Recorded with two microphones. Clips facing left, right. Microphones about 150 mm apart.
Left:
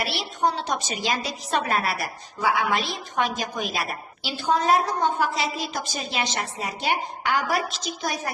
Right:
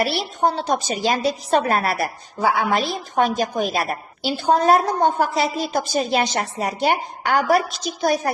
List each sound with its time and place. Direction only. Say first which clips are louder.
0.0 s a woman's voice: right 5 dB; 45° right (ahead or behind)